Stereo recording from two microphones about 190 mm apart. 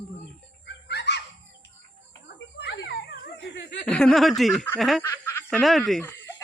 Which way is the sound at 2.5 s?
65° left (ahead or behind).